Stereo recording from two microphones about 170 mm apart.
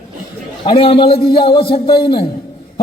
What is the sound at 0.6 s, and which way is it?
A man's voice, 30° left (ahead or behind).